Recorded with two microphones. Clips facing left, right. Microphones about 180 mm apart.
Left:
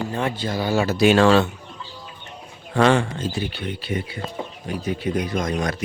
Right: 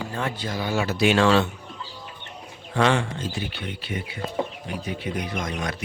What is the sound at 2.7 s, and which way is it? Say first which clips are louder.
Speech: left 4 dB; 40° left (ahead or behind).